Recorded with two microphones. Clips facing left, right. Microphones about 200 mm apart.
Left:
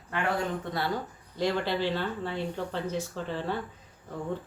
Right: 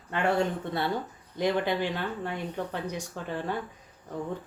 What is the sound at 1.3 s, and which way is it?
Speech, 15° right (ahead or behind).